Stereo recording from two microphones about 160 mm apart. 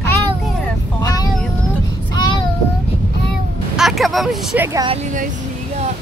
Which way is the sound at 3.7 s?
Centre (ahead or behind).